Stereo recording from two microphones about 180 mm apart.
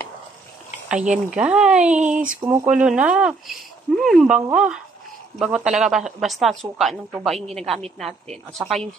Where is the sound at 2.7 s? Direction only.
5° right (ahead or behind).